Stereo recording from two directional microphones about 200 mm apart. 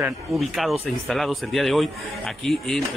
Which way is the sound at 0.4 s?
Centre (ahead or behind).